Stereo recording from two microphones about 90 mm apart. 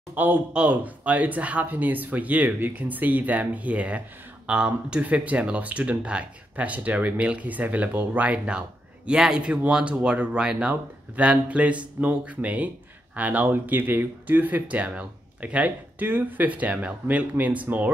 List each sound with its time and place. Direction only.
0.1 s speech: 20° right (ahead or behind)